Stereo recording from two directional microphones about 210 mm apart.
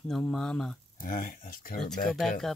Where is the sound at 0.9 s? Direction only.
40° left (ahead or behind).